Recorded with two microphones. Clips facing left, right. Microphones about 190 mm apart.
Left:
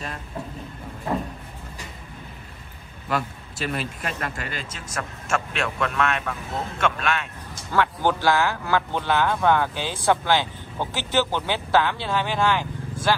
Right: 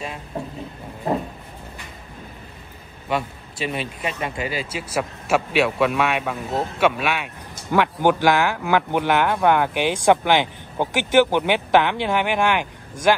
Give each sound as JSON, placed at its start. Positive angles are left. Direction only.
{"t": 3.1, "sound": "speech", "side_deg": 0}